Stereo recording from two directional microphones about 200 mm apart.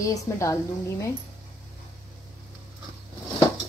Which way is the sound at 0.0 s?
15° left (ahead or behind).